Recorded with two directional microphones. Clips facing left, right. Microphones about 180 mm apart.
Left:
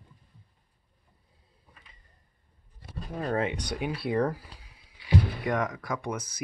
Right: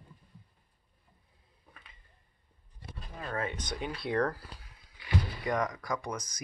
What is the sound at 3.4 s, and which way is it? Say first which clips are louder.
Speech: left 5 dB; 15° left (ahead or behind).